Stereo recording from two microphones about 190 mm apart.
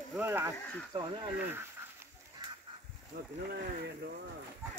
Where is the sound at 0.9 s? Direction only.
25° right (ahead or behind).